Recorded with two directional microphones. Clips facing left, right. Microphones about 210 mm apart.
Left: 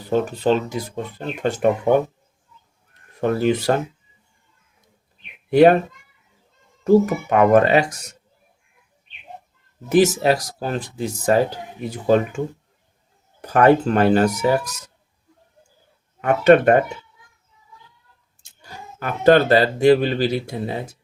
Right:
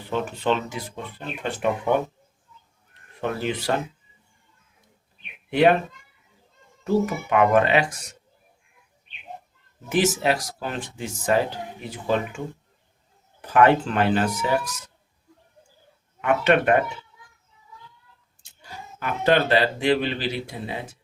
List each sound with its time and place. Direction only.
0.0 s speech: 40° left (ahead or behind)
3.2 s speech: 45° left (ahead or behind)
5.5 s speech: 40° left (ahead or behind)
6.8 s speech: 45° left (ahead or behind)
9.9 s speech: 40° left (ahead or behind)
13.4 s speech: 40° left (ahead or behind)
16.2 s speech: 40° left (ahead or behind)
18.9 s speech: 45° left (ahead or behind)